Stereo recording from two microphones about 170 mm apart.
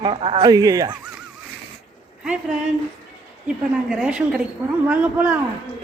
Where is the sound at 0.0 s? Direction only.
35° right (ahead or behind).